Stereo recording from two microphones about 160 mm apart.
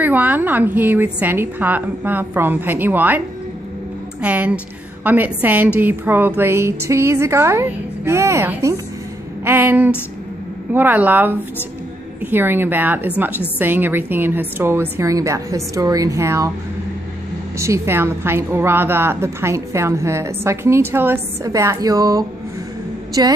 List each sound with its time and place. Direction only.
0.0 s a woman's voice: 10° right (ahead or behind)
4.2 s a woman's voice: 10° right (ahead or behind)
17.6 s a woman's voice: 20° right (ahead or behind)